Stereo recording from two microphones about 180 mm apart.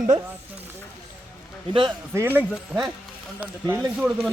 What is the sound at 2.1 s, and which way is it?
Speech, 10° right (ahead or behind).